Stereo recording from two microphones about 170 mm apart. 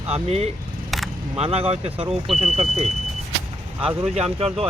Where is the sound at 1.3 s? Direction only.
35° right (ahead or behind).